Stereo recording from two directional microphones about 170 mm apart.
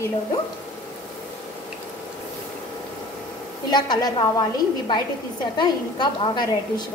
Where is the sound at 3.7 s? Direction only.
25° left (ahead or behind).